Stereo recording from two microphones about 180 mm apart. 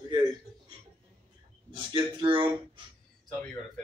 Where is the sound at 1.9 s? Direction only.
30° right (ahead or behind).